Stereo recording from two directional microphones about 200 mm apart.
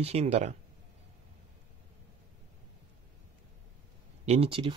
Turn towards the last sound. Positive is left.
turn(degrees=-25)  # may be behind; listen again after turning